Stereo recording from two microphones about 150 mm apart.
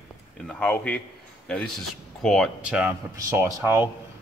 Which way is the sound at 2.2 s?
5° left (ahead or behind).